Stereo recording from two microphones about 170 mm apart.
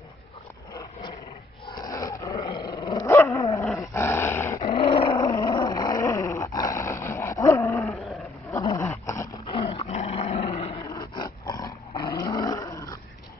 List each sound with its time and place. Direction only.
1.7 s a sound: 20° left (ahead or behind)
2.4 s dog: 25° left (ahead or behind)
4.6 s dog: 35° left (ahead or behind); by 7.9 s 15° left (ahead or behind)
7.9 s roaring cats: centre (ahead or behind)
8.5 s dog: 15° left (ahead or behind)
9.5 s roar: 30° left (ahead or behind)
10.8 s roar: 20° left (ahead or behind)